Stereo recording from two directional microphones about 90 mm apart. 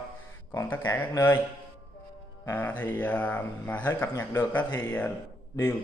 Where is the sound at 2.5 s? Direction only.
20° left (ahead or behind).